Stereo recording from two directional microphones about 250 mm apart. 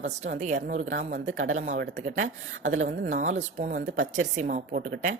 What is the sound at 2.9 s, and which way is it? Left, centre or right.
A woman's voice, right.